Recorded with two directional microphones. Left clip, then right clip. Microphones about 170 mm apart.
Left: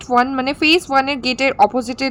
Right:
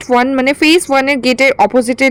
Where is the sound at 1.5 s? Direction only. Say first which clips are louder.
Right 3 dB; 25° right (ahead or behind).